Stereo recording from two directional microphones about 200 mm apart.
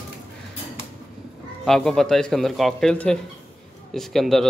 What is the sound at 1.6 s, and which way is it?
Speech, centre (ahead or behind).